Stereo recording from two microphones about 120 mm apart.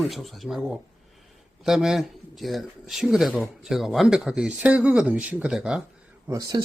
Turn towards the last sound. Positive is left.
turn(degrees=-30)  # may be behind; listen again after turning